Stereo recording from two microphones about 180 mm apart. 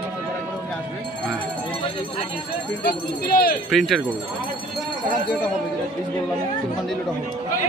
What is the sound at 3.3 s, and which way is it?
Speech, 55° left (ahead or behind).